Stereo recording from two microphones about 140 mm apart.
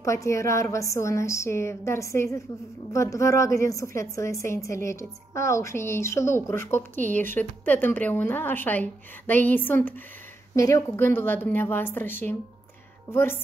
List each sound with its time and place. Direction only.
0.0 s a woman's voice: 20° left (ahead or behind)